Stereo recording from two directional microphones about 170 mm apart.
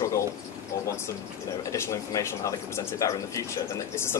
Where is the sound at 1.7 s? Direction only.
20° left (ahead or behind).